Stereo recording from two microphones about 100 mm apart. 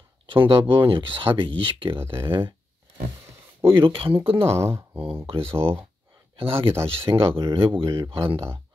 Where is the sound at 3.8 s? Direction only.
60° right (ahead or behind).